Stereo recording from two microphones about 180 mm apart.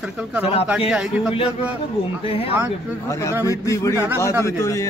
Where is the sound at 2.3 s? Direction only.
30° left (ahead or behind).